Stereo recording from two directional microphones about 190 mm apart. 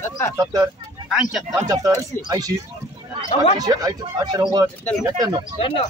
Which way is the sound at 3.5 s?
20° right (ahead or behind).